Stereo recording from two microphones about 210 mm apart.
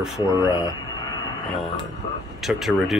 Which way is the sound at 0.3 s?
15° left (ahead or behind).